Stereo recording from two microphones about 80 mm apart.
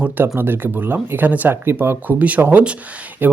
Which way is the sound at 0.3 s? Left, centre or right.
Right.